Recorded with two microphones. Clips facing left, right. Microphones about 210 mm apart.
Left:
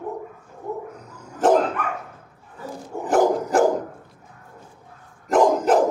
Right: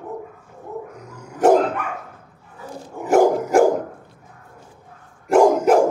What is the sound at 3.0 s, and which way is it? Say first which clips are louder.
Dog: right 3 dB; 10° right (ahead or behind).